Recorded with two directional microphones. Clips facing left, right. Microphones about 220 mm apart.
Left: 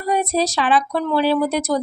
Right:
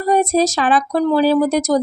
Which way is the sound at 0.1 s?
45° right (ahead or behind).